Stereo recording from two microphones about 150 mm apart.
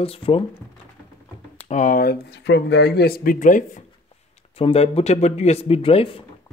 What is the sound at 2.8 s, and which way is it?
Speech, 90° left.